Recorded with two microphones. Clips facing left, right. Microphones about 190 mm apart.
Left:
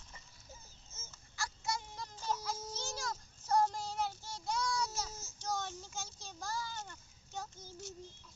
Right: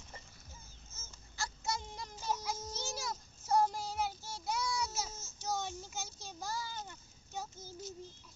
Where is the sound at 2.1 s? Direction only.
10° right (ahead or behind).